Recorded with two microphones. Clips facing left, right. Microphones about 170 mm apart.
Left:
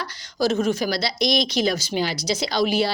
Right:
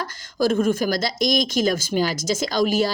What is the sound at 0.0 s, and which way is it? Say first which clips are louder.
Speech: right 1 dB; 45° right (ahead or behind).